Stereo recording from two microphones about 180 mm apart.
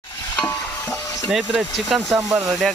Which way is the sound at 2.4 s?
Centre (ahead or behind).